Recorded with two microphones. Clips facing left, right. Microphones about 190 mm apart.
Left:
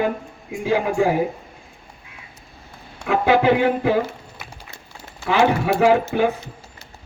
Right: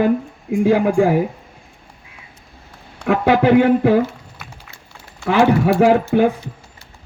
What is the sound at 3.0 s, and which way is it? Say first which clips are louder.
Speech: right 2 dB; 50° right (ahead or behind).